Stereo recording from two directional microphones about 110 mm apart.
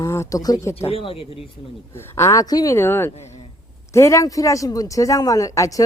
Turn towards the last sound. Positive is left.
turn(degrees=30)  # may be behind; listen again after turning